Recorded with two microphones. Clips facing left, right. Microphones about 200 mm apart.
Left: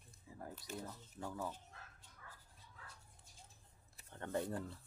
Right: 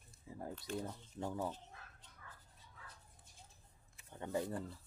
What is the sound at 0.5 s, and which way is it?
Speech, 5° left (ahead or behind).